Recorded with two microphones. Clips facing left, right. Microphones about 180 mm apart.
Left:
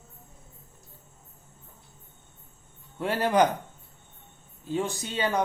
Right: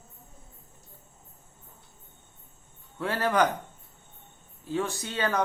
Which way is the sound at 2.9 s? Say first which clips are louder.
Left 2 dB; 20° left (ahead or behind).